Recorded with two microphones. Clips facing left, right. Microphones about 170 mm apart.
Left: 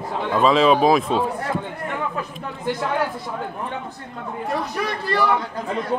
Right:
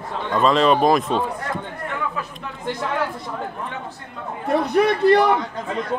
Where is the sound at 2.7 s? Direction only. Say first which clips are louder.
Left 1 dB; centre (ahead or behind).